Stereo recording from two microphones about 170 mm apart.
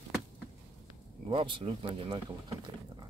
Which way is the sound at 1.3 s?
30° right (ahead or behind).